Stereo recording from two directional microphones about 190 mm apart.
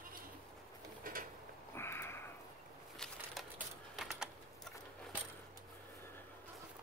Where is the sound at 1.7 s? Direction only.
10° left (ahead or behind).